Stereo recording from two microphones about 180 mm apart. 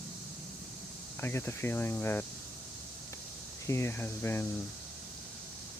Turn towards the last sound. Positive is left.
turn(degrees=10)  # may be behind; listen again after turning